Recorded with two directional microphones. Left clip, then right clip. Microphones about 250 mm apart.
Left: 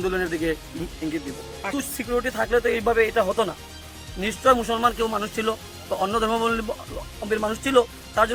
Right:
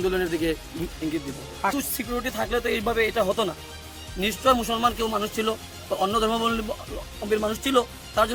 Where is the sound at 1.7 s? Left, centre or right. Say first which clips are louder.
Left 3 dB; centre.